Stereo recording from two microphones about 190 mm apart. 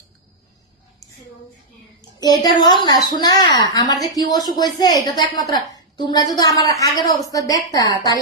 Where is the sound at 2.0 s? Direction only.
20° left (ahead or behind).